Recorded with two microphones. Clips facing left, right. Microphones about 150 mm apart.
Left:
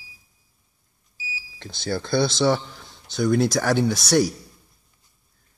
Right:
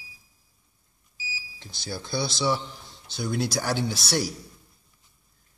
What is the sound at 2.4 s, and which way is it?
Speech, 50° left (ahead or behind).